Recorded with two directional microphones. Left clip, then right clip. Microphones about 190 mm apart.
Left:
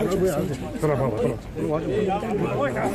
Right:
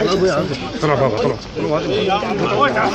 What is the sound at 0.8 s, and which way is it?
Speech, 40° right (ahead or behind).